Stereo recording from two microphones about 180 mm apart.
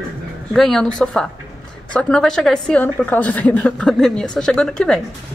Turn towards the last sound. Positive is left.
turn(degrees=5)  # may be behind; listen again after turning